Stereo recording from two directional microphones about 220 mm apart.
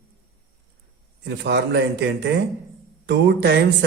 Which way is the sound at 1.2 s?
55° right (ahead or behind).